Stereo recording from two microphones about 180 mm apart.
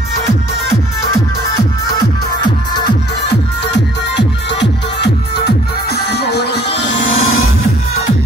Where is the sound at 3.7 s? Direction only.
75° left (ahead or behind).